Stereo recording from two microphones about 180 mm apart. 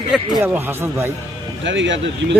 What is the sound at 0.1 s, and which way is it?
Speech, 10° right (ahead or behind).